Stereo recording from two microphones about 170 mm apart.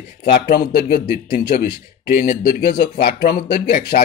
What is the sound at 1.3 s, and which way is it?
Speech, 50° left (ahead or behind).